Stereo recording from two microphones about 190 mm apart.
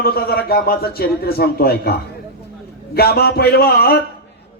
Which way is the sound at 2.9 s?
55° left (ahead or behind).